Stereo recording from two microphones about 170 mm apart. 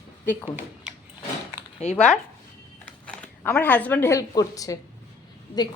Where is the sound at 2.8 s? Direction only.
10° left (ahead or behind).